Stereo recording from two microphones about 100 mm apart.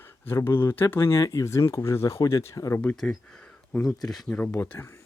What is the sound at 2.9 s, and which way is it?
Speech, 5° left (ahead or behind).